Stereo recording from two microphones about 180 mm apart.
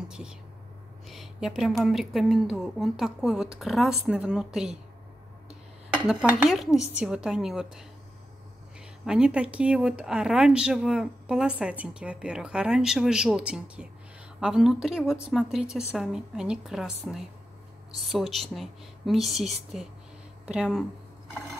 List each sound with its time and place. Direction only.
0.1 s speech: 5° right (ahead or behind)
6.0 s speech: 5° right (ahead or behind)
9.0 s speech: 5° right (ahead or behind)